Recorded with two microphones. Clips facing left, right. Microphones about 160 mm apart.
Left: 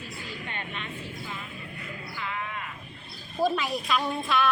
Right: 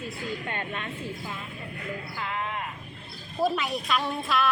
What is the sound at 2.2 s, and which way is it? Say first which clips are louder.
Music: right 1 dB; 40° right (ahead or behind).